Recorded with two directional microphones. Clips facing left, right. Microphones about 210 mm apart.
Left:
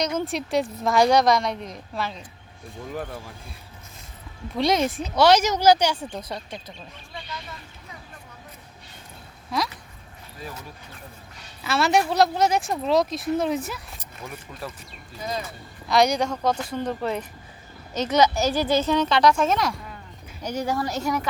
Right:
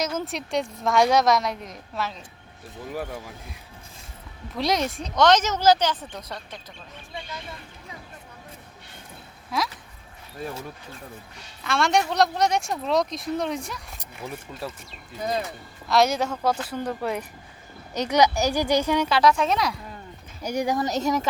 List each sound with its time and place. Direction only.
0.2 s speech: centre (ahead or behind)
4.5 s speech: centre (ahead or behind)
11.6 s speech: 5° left (ahead or behind)
14.6 s speech: 25° right (ahead or behind)
15.9 s speech: centre (ahead or behind)
20.4 s speech: 10° right (ahead or behind)